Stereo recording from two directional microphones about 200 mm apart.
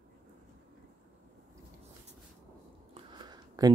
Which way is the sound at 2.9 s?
20° right (ahead or behind).